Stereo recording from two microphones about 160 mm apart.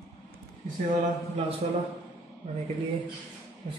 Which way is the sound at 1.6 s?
40° right (ahead or behind).